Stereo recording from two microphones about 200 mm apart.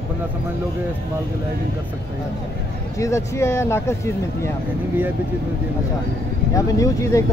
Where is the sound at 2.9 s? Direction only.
15° left (ahead or behind).